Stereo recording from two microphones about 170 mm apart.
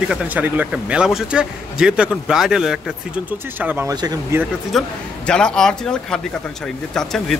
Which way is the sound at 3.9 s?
20° right (ahead or behind).